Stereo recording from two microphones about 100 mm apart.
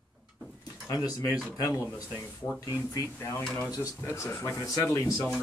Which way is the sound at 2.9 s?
30° left (ahead or behind).